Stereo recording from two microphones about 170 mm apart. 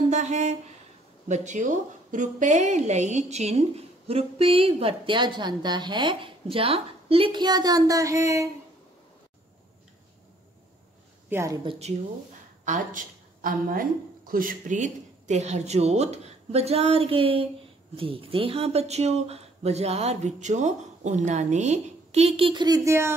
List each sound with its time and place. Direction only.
0.1 s a woman's voice: 45° right (ahead or behind); by 8.5 s 20° right (ahead or behind)
11.2 s speech: 15° right (ahead or behind)
11.8 s speech: 40° right (ahead or behind); by 23.1 s 15° right (ahead or behind)